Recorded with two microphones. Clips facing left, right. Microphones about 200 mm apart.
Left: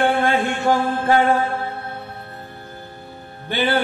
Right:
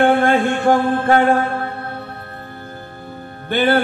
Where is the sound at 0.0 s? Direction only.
50° right (ahead or behind).